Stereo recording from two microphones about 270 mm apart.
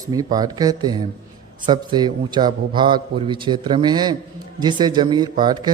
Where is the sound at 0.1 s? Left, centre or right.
Centre.